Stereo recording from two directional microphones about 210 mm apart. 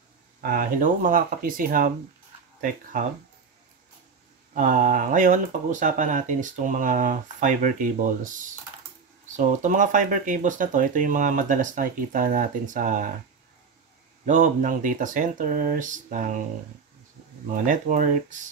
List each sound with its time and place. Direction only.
0.4 s speech: 45° right (ahead or behind)
4.6 s speech: 40° right (ahead or behind)
14.2 s speech: 35° right (ahead or behind)
17.6 s speech: 40° right (ahead or behind)